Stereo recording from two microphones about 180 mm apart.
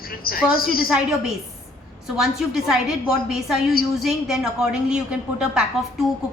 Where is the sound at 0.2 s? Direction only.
55° left (ahead or behind).